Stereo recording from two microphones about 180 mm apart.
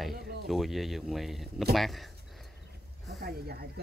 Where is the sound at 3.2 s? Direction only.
60° right (ahead or behind).